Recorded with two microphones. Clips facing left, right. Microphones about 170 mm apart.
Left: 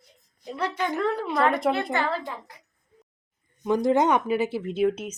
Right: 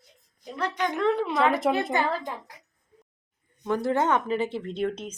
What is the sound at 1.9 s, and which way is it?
Speech, 15° right (ahead or behind).